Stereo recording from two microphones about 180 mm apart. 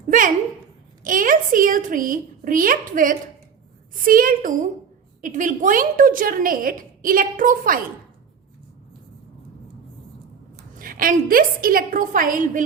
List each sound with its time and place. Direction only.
1.0 s a sound: 50° right (ahead or behind)
4.0 s a woman's voice: 50° right (ahead or behind)
10.6 s a woman's voice: 50° right (ahead or behind)